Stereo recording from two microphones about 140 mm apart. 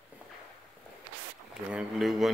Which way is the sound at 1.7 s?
5° right (ahead or behind).